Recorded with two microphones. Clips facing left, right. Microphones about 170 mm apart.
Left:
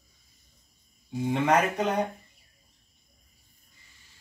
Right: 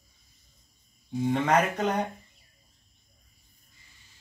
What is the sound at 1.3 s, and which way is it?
Speech, 10° left (ahead or behind).